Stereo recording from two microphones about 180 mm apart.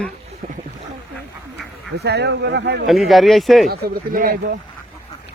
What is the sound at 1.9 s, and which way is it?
Speech, 65° right (ahead or behind).